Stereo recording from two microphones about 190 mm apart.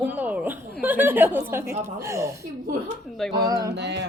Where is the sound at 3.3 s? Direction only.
20° right (ahead or behind).